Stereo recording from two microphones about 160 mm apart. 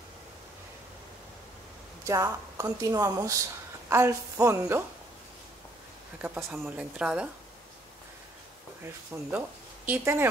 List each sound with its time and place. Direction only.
2.0 s speech: 20° right (ahead or behind)
6.2 s speech: 15° right (ahead or behind)
8.8 s speech: 15° right (ahead or behind)